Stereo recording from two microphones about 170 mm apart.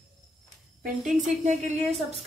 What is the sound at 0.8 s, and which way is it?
A woman's voice, 45° right (ahead or behind).